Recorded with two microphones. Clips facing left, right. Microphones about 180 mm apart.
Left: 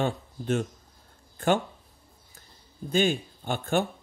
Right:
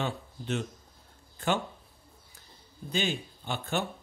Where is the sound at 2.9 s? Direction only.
50° left (ahead or behind).